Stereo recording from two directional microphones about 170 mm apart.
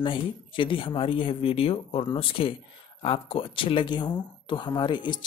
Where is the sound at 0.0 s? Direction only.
30° left (ahead or behind).